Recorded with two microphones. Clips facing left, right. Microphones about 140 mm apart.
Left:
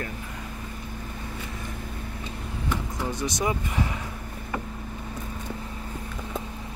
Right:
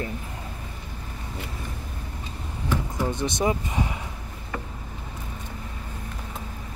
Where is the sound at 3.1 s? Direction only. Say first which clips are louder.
Right 2 dB; 25° right (ahead or behind).